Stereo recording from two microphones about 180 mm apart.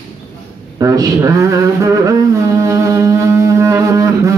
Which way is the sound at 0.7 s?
20° right (ahead or behind).